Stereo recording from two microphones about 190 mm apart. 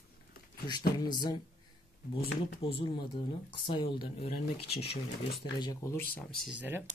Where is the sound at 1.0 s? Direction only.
20° left (ahead or behind).